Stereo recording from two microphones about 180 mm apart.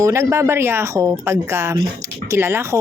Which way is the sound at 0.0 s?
15° right (ahead or behind).